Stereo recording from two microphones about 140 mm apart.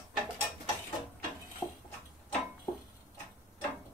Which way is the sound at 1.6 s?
25° left (ahead or behind).